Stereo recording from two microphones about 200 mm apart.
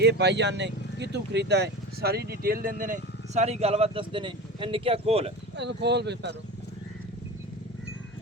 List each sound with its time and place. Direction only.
0.0 s speech: 55° right (ahead or behind); by 5.3 s 30° right (ahead or behind)
5.5 s speech: 60° right (ahead or behind)